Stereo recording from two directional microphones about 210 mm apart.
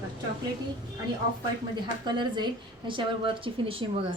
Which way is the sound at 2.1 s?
20° right (ahead or behind).